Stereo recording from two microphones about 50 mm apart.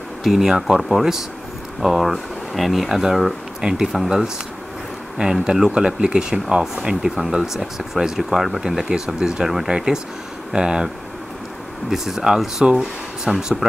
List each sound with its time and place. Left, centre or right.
0.4 s speech: centre
11.9 s speech: centre
12.6 s speech: centre